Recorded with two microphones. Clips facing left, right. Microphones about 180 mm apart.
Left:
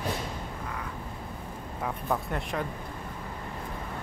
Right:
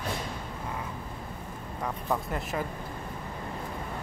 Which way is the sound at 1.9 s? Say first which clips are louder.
Even; centre (ahead or behind).